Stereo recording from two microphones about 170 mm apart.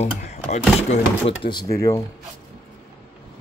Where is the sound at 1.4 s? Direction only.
25° left (ahead or behind).